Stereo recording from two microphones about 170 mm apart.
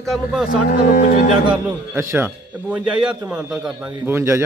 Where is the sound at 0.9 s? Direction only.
50° left (ahead or behind).